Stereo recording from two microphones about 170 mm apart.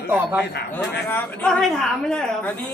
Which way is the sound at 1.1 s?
10° left (ahead or behind).